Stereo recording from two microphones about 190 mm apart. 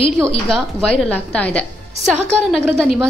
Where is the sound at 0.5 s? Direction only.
Centre (ahead or behind).